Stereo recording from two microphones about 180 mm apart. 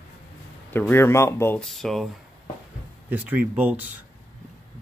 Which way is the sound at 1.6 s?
Centre (ahead or behind).